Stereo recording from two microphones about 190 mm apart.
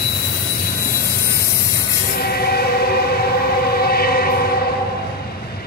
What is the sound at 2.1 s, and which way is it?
Music, 55° left (ahead or behind).